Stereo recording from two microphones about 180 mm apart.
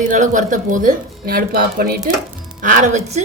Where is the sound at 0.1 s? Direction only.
45° right (ahead or behind).